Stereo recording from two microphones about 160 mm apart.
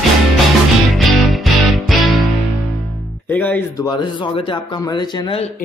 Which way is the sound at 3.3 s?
10° left (ahead or behind).